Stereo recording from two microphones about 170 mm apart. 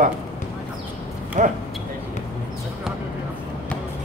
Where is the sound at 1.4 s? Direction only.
50° right (ahead or behind).